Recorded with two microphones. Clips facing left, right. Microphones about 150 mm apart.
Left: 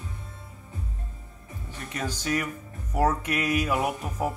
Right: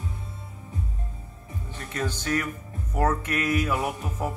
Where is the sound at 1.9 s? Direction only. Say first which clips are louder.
Right 1 dB; 15° left (ahead or behind).